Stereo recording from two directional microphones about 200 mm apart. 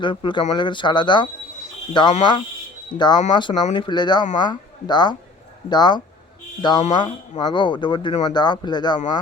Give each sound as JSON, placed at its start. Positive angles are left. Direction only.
{"t": 0.0, "sound": "speech", "side_deg": 25}